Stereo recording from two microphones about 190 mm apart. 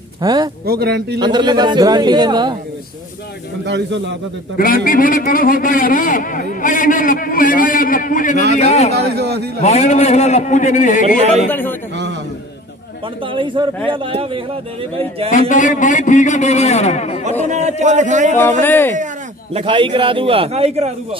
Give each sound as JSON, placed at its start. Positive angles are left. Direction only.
{"t": 0.2, "sound": "a man's voice", "side_deg": -20}
{"t": 0.7, "sound": "speech", "side_deg": -60}
{"t": 1.2, "sound": "a man's voice", "side_deg": -25}
{"t": 3.6, "sound": "speech", "side_deg": -65}
{"t": 4.6, "sound": "a man's voice", "side_deg": 50}
{"t": 9.1, "sound": "speech", "side_deg": -60}
{"t": 9.6, "sound": "a man's voice", "side_deg": 35}
{"t": 13.2, "sound": "a man's voice", "side_deg": -25}
{"t": 15.3, "sound": "a man's voice", "side_deg": 40}
{"t": 17.5, "sound": "a man's voice", "side_deg": -35}
{"t": 18.4, "sound": "speech", "side_deg": 10}
{"t": 19.5, "sound": "a man's voice", "side_deg": -25}